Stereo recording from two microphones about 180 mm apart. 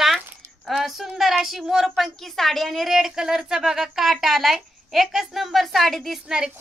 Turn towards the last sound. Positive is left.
turn(degrees=-5)  # may be behind; listen again after turning